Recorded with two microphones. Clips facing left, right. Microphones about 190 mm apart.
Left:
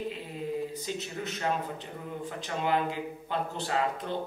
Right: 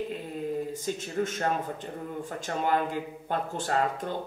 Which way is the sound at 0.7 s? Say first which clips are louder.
Right 5 dB; 50° right (ahead or behind).